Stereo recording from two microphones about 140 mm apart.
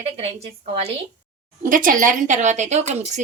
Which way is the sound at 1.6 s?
75° right (ahead or behind).